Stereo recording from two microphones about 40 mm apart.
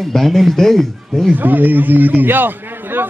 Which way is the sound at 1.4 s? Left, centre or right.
Right.